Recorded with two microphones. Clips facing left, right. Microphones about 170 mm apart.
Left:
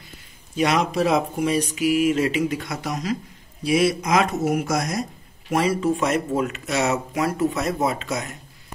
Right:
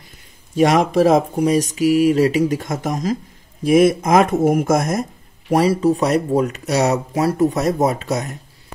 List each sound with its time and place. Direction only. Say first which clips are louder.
0.6 s speech: right 6 dB; 50° right (ahead or behind)
5.5 s speech: right 5 dB; 35° right (ahead or behind)